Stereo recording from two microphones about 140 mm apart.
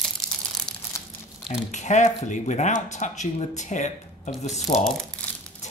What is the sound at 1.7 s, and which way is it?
Speech, 60° left (ahead or behind).